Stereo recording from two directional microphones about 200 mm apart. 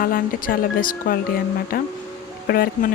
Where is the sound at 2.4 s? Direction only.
50° left (ahead or behind).